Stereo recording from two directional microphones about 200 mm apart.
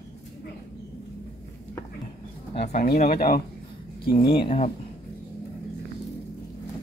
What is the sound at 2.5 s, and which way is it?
Speech, 50° left (ahead or behind).